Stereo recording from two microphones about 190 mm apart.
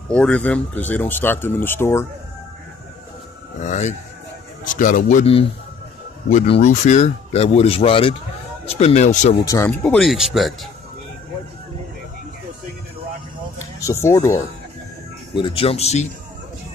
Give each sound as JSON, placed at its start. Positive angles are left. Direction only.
{"t": 0.1, "sound": "speech", "side_deg": 5}
{"t": 3.6, "sound": "speech", "side_deg": 35}
{"t": 6.3, "sound": "speech", "side_deg": 35}
{"t": 9.4, "sound": "speech", "side_deg": 15}
{"t": 9.8, "sound": "speech", "side_deg": 0}
{"t": 13.7, "sound": "speech", "side_deg": 15}
{"t": 15.3, "sound": "speech", "side_deg": 30}